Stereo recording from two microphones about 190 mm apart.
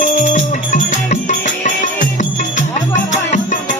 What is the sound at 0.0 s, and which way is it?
Music, 40° left (ahead or behind).